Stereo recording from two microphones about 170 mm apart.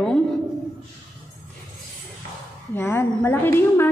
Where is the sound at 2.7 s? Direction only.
15° left (ahead or behind).